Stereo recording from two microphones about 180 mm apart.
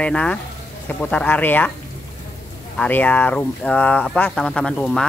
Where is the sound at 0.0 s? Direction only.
5° left (ahead or behind).